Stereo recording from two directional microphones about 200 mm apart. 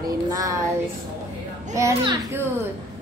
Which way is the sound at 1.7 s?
15° right (ahead or behind).